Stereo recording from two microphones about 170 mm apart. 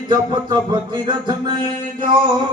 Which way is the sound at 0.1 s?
25° right (ahead or behind).